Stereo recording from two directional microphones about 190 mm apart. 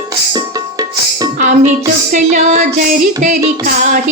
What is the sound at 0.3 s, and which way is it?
Music, 20° right (ahead or behind).